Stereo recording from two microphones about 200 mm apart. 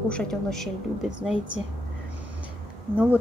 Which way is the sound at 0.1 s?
5° left (ahead or behind).